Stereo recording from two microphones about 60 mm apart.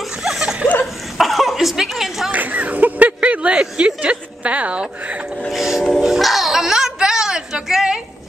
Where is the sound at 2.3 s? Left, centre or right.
Right.